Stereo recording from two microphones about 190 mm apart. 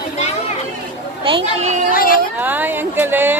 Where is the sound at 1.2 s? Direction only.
30° right (ahead or behind).